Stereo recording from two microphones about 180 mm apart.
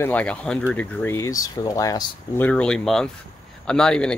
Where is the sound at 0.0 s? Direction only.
10° left (ahead or behind).